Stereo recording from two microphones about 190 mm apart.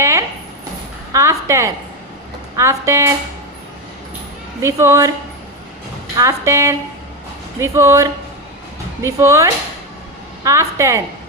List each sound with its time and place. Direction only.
0.0 s a sound: 15° right (ahead or behind)
1.1 s a woman's voice: 15° right (ahead or behind)
4.6 s a woman's voice: 15° right (ahead or behind)
6.1 s a woman's voice: 15° right (ahead or behind)